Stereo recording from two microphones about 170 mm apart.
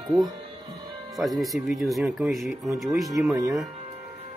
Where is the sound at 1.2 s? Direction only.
Centre (ahead or behind).